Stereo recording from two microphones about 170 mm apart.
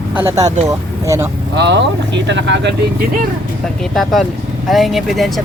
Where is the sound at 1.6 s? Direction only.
90° right.